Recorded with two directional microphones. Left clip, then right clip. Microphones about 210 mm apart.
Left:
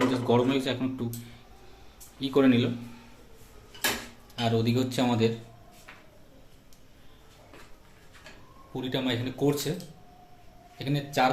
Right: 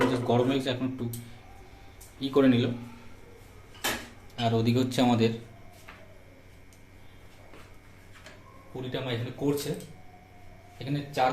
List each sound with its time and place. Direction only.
0.1 s speech: 5° left (ahead or behind)
2.1 s speech: 5° left (ahead or behind)
4.4 s speech: centre (ahead or behind)
8.7 s speech: 40° left (ahead or behind)
10.8 s speech: 35° left (ahead or behind)